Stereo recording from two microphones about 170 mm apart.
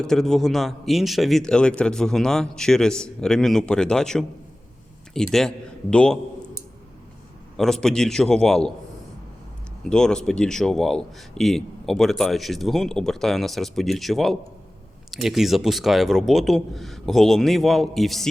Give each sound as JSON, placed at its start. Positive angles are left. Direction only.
{"t": 0.0, "sound": "a man's voice", "side_deg": 5}
{"t": 7.5, "sound": "a man's voice", "side_deg": 0}
{"t": 9.9, "sound": "a man's voice", "side_deg": 5}